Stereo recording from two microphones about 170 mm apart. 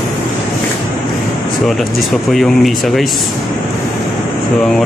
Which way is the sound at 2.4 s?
Centre (ahead or behind).